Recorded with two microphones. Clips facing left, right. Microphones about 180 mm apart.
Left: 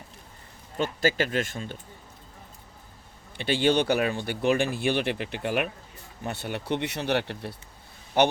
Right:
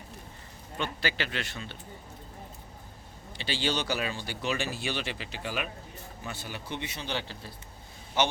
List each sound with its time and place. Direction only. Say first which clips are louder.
0.8 s speech: left 7 dB; 45° left (ahead or behind)
3.3 s speech: left 8 dB; 55° left (ahead or behind)